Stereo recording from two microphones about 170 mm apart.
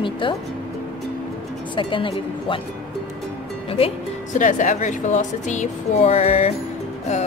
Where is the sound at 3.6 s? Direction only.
35° left (ahead or behind).